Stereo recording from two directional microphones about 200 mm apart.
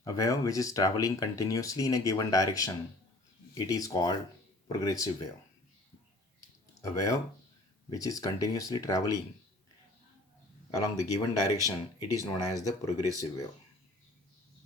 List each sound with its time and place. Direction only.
0.0 s speech: 15° left (ahead or behind)
6.8 s speech: 15° left (ahead or behind)
10.7 s speech: 15° left (ahead or behind)